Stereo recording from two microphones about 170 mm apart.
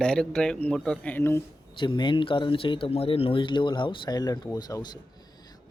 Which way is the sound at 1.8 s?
30° left (ahead or behind).